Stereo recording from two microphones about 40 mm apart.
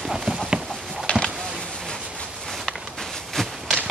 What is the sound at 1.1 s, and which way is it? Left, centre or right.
Power windows, left.